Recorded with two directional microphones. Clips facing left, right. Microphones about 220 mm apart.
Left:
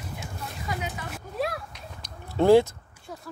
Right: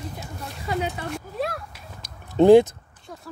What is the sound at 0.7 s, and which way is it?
Speech, 30° right (ahead or behind).